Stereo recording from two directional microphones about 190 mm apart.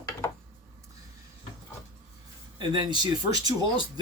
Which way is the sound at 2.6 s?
25° right (ahead or behind).